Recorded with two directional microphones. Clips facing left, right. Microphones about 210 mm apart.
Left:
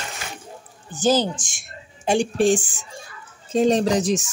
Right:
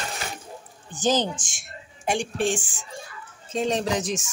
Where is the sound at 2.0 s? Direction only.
35° left (ahead or behind).